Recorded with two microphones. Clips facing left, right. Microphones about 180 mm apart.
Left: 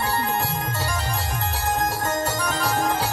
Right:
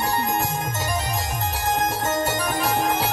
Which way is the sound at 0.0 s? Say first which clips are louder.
Right 1 dB; 20° right (ahead or behind).